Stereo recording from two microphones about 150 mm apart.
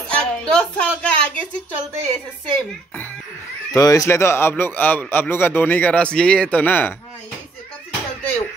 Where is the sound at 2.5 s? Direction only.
10° left (ahead or behind).